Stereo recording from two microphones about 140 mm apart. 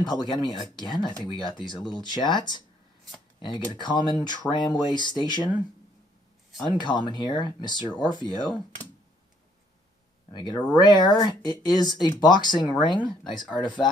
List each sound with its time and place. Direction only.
0.0 s speech: 30° left (ahead or behind)
6.6 s speech: 30° left (ahead or behind)
10.3 s speech: 30° left (ahead or behind)